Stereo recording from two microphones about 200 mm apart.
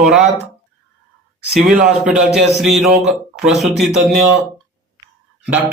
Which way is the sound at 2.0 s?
5° right (ahead or behind).